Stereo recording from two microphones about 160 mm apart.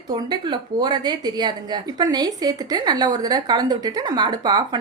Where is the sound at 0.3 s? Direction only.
25° right (ahead or behind).